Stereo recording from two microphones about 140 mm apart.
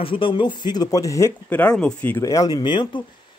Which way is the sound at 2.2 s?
25° left (ahead or behind).